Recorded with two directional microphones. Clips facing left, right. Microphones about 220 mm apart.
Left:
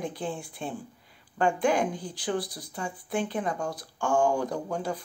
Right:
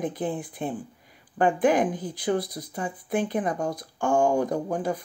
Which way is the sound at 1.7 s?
20° right (ahead or behind).